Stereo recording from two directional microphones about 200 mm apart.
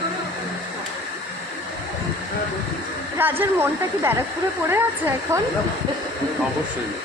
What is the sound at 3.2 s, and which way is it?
Speech, 10° right (ahead or behind).